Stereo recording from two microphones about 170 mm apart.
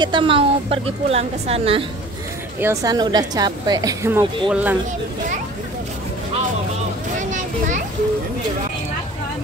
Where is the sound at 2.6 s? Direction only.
20° right (ahead or behind).